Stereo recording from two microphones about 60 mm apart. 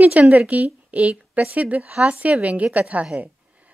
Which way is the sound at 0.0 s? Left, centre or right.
Right.